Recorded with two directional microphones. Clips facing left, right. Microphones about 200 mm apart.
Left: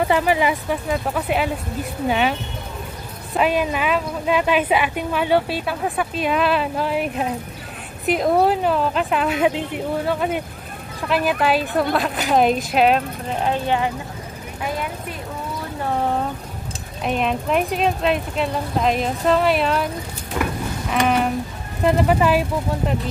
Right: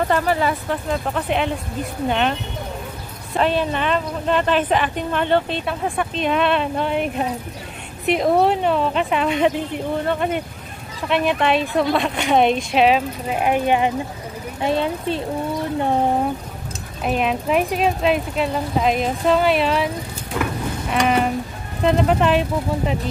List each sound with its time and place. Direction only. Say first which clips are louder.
0.0 s a woman's voice: left 1 dB; 10° left (ahead or behind)
3.3 s a woman's voice: even; 10° left (ahead or behind)
13.4 s speech: right 3 dB; 15° right (ahead or behind)
17.0 s speech: right 1 dB; centre (ahead or behind)
20.9 s a sound: even; centre (ahead or behind)
21.8 s speech: even; 5° left (ahead or behind)